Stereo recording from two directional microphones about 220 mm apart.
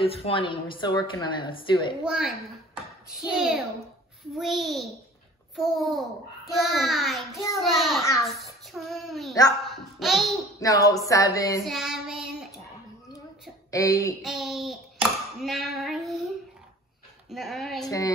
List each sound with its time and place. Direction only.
0.0 s a woman's voice: 25° left (ahead or behind)
2.0 s a child's voice: 5° right (ahead or behind)
4.4 s child singing: centre (ahead or behind)
10.6 s a sound: 15° left (ahead or behind)
11.6 s child singing: centre (ahead or behind)
13.7 s a sound: 15° left (ahead or behind)
14.2 s hands: centre (ahead or behind)
17.3 s child singing: centre (ahead or behind)
17.8 s a sound: 15° left (ahead or behind)